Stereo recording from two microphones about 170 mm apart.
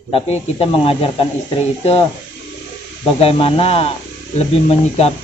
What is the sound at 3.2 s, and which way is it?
Speech, 35° left (ahead or behind).